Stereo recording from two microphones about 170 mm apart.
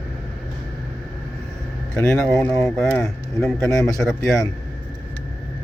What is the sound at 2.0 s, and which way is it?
A man's voice, 10° left (ahead or behind).